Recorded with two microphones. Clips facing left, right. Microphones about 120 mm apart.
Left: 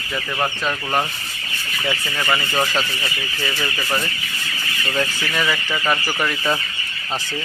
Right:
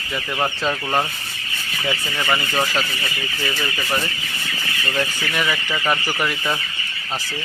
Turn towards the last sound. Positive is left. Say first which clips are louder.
# even
turn(degrees=-10)  # may be behind; listen again after turning